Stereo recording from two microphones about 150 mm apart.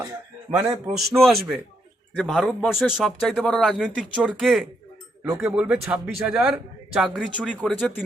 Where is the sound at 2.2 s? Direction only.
Centre (ahead or behind).